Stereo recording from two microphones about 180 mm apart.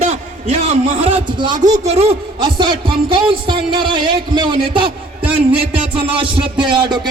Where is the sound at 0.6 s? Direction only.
30° right (ahead or behind).